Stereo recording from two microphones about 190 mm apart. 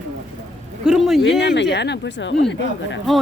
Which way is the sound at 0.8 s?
Centre (ahead or behind).